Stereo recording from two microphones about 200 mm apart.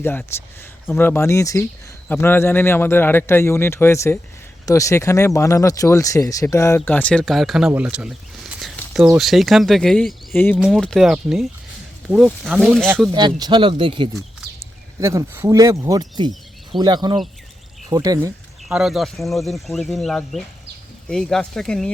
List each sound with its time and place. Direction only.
0.0 s speech: 10° left (ahead or behind)
13.1 s speech: 20° right (ahead or behind)
15.0 s speech: 15° right (ahead or behind)
18.7 s speech: centre (ahead or behind)